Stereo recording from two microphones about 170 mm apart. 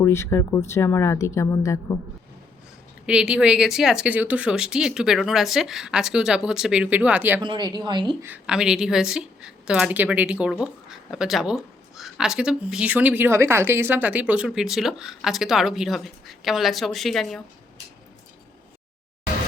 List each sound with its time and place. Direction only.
0.0 s a woman's voice: 15° left (ahead or behind)
3.1 s a woman's voice: 5° right (ahead or behind)
7.4 s speech: 25° right (ahead or behind)
8.2 s a woman's voice: 5° right (ahead or behind)